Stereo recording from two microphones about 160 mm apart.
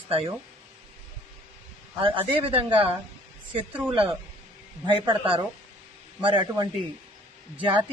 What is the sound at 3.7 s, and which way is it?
Speech, 10° right (ahead or behind).